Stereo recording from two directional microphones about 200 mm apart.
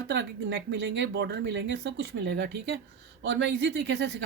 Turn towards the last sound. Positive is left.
turn(degrees=-60)  # may be behind; listen again after turning